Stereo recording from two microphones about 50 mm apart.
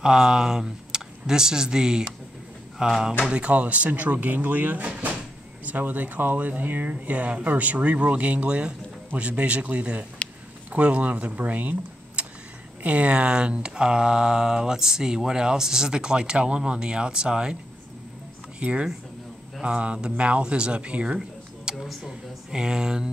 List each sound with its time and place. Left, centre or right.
0.0 s speech: centre; by 11.7 s right
12.2 s vehicle: right
12.8 s speech: right
18.6 s speech: right
21.7 s speech: centre
22.5 s speech: centre